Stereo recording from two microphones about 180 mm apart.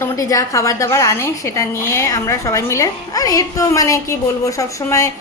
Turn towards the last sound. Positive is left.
turn(degrees=15)  # may be behind; listen again after turning